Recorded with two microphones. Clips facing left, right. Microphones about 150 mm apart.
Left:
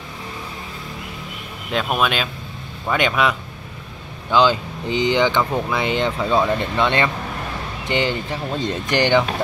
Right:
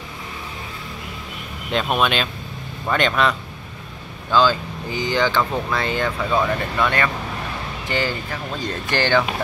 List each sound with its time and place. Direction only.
1.7 s speech: centre (ahead or behind); by 9.2 s 15° left (ahead or behind)